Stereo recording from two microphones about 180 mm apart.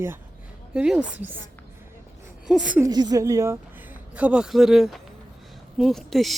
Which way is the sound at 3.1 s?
15° right (ahead or behind).